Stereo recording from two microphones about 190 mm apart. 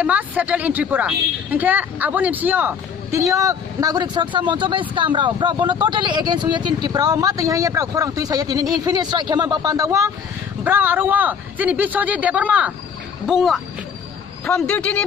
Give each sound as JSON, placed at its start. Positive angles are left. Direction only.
{"t": 0.0, "sound": "a man's voice", "side_deg": -10}